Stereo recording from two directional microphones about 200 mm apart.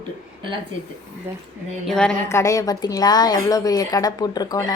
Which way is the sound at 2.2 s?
15° left (ahead or behind).